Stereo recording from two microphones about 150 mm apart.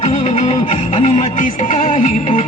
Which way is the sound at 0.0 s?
55° left (ahead or behind).